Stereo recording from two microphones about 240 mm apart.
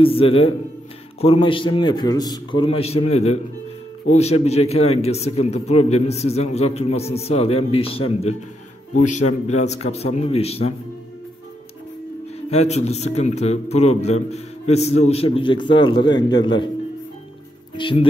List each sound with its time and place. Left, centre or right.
0.0 s a man's voice: left
12.4 s a man's voice: left
17.7 s speech: left